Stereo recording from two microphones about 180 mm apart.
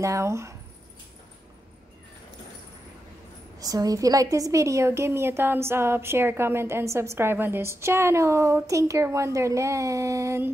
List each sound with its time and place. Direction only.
0.0 s a woman's voice: 15° right (ahead or behind)
3.5 s a woman's voice: 20° right (ahead or behind)